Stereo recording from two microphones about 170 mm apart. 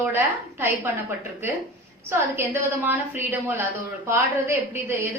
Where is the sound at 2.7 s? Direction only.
15° right (ahead or behind).